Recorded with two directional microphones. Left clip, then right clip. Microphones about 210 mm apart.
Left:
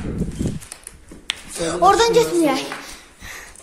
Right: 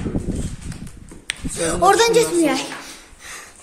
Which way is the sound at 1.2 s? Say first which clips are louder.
Right 1 dB; 20° right (ahead or behind).